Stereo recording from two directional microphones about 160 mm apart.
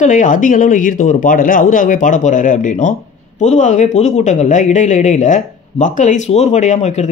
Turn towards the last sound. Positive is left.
turn(degrees=45)  # may be behind; listen again after turning